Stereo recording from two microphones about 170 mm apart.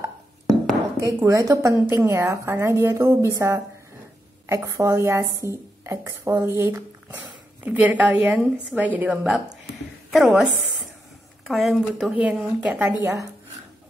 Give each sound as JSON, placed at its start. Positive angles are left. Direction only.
{"t": 0.9, "sound": "a woman's voice", "side_deg": -20}